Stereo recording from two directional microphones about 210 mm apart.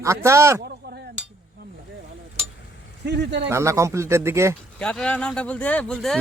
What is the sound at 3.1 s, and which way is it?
Speech, 55° right (ahead or behind).